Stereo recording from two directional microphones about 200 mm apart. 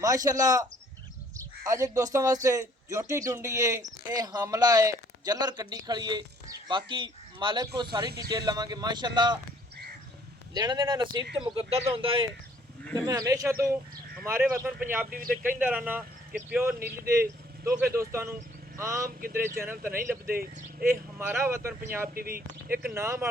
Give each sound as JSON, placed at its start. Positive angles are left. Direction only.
{"t": 0.0, "sound": "speech", "side_deg": -15}
{"t": 8.1, "sound": "speech", "side_deg": -55}
{"t": 8.4, "sound": "speech", "side_deg": -20}
{"t": 10.5, "sound": "speech", "side_deg": -20}
{"t": 15.1, "sound": "speech", "side_deg": -45}
{"t": 15.4, "sound": "speech", "side_deg": -10}
{"t": 19.0, "sound": "speech", "side_deg": -45}
{"t": 19.5, "sound": "speech", "side_deg": -10}
{"t": 20.2, "sound": "speech", "side_deg": -45}
{"t": 20.9, "sound": "speech", "side_deg": -10}
{"t": 22.1, "sound": "speech", "side_deg": -45}
{"t": 23.0, "sound": "speech", "side_deg": -15}